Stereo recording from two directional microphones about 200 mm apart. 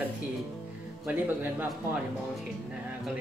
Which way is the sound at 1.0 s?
10° right (ahead or behind).